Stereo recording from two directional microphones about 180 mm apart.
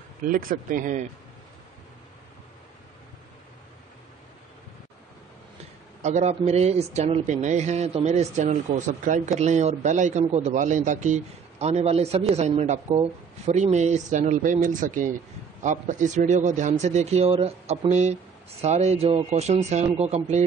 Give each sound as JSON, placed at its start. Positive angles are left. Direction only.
{"t": 0.2, "sound": "speech", "side_deg": -50}
{"t": 6.0, "sound": "a man's voice", "side_deg": -40}